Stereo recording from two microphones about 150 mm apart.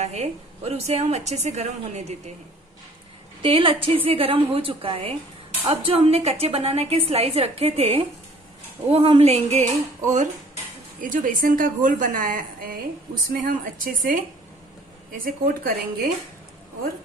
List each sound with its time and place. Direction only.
0.0 s a woman's voice: 45° right (ahead or behind)
3.4 s a woman's voice: 35° right (ahead or behind)
11.0 s a woman's voice: 65° right (ahead or behind)